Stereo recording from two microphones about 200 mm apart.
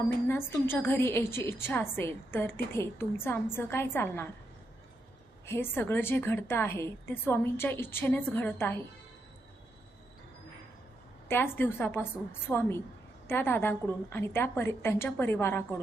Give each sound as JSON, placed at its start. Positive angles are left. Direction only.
{"t": 0.3, "sound": "a woman's voice", "side_deg": 10}
{"t": 5.5, "sound": "a woman's voice", "side_deg": 10}
{"t": 11.3, "sound": "a woman's voice", "side_deg": 10}